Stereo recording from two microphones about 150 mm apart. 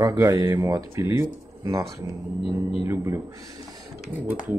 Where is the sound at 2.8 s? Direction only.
15° right (ahead or behind).